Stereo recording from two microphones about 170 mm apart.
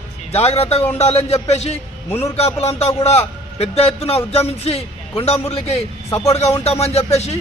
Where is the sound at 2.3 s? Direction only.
35° left (ahead or behind).